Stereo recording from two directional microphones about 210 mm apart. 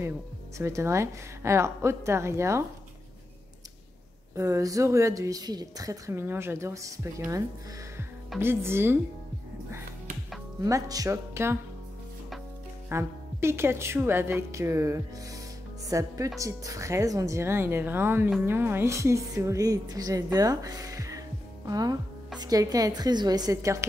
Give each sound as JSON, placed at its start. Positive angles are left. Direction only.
{"t": 0.6, "sound": "a woman's voice", "side_deg": -15}
{"t": 4.4, "sound": "a woman's voice", "side_deg": -15}
{"t": 10.6, "sound": "a woman's voice", "side_deg": -15}
{"t": 12.9, "sound": "a woman's voice", "side_deg": -10}